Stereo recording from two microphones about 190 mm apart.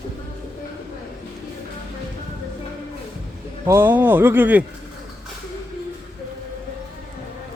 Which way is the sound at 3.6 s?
15° right (ahead or behind).